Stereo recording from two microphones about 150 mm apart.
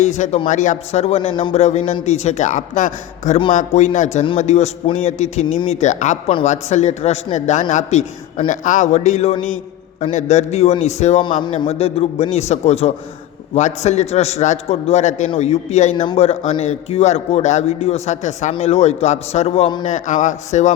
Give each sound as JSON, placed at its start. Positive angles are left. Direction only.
{"t": 0.0, "sound": "a man's voice", "side_deg": 50}
{"t": 1.5, "sound": "a man's voice", "side_deg": 45}
{"t": 11.2, "sound": "a man's voice", "side_deg": 30}